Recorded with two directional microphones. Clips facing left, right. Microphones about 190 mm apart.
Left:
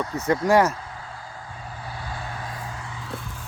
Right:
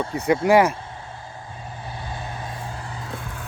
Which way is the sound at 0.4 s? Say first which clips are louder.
Right 2 dB; 10° right (ahead or behind).